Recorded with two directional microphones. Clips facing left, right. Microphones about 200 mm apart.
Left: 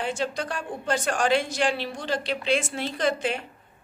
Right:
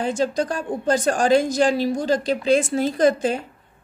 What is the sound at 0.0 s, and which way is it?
A woman's voice, 40° right (ahead or behind).